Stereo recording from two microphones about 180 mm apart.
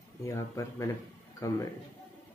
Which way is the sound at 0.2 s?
15° left (ahead or behind).